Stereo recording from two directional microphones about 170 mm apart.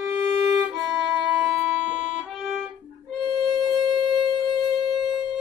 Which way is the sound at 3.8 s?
30° right (ahead or behind).